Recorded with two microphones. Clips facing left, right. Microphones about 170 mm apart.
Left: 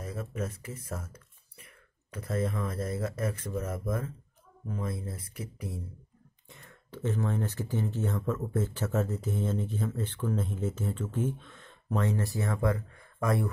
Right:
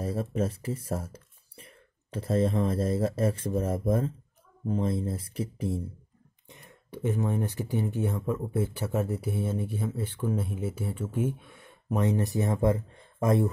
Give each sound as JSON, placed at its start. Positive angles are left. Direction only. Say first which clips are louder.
{"t": 0.0, "sound": "speech", "louder": "right 7 dB", "side_deg": -30}
{"t": 6.5, "sound": "speech", "louder": "right 3 dB", "side_deg": -15}